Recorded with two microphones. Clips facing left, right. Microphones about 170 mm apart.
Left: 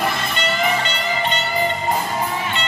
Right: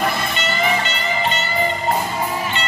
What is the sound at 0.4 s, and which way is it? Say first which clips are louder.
Music: left 1 dB; centre (ahead or behind).